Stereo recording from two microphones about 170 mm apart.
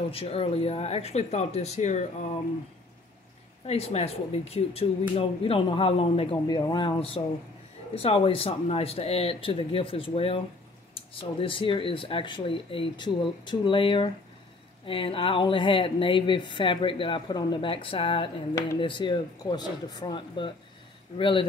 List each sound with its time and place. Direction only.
0.1 s speech: 35° left (ahead or behind)
3.6 s speech: 35° left (ahead or behind)